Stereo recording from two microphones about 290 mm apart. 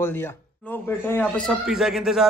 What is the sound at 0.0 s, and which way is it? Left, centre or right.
A man's voice, centre.